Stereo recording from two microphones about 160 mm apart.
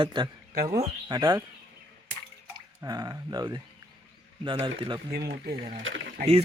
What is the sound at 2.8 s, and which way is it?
Speech, 25° right (ahead or behind).